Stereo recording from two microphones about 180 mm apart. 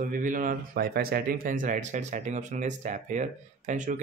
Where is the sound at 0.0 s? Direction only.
50° right (ahead or behind).